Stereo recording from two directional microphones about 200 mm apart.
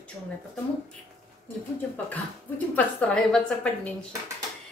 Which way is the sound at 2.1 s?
10° left (ahead or behind).